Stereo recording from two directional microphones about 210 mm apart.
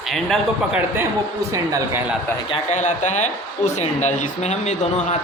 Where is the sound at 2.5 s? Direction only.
35° left (ahead or behind).